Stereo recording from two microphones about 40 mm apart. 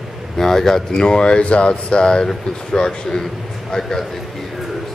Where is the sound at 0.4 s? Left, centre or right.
Centre.